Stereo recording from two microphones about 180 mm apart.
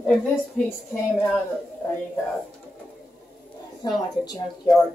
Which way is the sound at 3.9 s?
20° left (ahead or behind).